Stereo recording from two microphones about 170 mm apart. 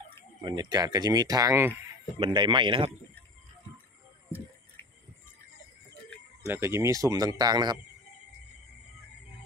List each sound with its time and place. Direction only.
0.4 s speech: 25° right (ahead or behind)
2.1 s speech: 30° right (ahead or behind)
6.4 s speech: 15° right (ahead or behind)